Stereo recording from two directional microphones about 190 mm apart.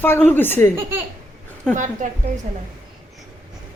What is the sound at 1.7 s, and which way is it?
Speech, 40° right (ahead or behind).